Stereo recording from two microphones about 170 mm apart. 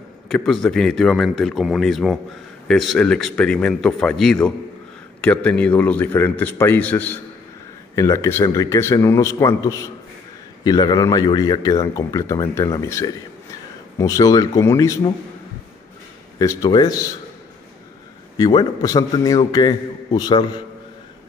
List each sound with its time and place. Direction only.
0.3 s speech: 5° left (ahead or behind)
16.3 s speech: 20° left (ahead or behind)
18.4 s speech: 25° left (ahead or behind)